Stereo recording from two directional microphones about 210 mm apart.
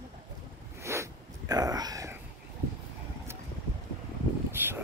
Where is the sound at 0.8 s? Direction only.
15° right (ahead or behind).